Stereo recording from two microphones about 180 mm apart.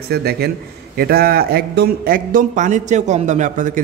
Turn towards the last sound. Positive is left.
turn(degrees=-45)  # may be behind; listen again after turning